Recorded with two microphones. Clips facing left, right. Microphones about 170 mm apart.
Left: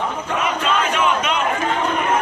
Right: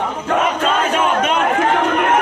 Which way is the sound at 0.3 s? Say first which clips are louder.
Right 6 dB; 45° right (ahead or behind).